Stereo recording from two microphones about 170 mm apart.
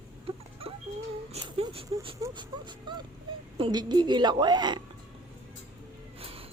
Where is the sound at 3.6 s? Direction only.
30° right (ahead or behind).